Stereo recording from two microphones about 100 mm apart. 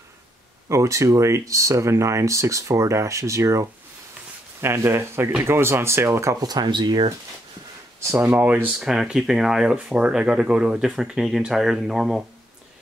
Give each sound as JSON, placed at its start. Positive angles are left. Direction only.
{"t": 0.7, "sound": "speech", "side_deg": -30}
{"t": 6.4, "sound": "speech", "side_deg": -45}
{"t": 8.1, "sound": "speech", "side_deg": -25}
{"t": 8.7, "sound": "speech", "side_deg": -5}